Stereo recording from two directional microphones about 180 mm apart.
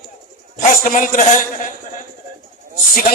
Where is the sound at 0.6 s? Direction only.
45° left (ahead or behind).